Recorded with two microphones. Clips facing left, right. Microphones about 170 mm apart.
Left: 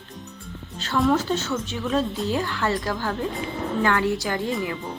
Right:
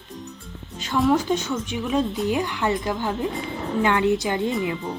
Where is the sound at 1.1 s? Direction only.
15° right (ahead or behind).